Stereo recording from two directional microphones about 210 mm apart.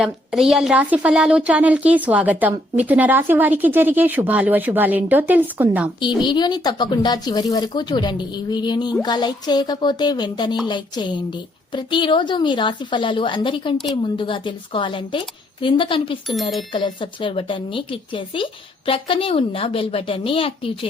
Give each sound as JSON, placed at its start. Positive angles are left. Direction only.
{"t": 0.0, "sound": "a woman's voice", "side_deg": 0}
{"t": 6.0, "sound": "speech", "side_deg": 20}
{"t": 16.3, "sound": "speech", "side_deg": 0}
{"t": 16.7, "sound": "speech", "side_deg": 25}